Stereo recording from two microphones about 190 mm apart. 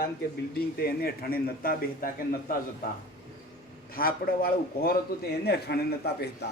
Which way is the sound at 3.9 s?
50° left (ahead or behind).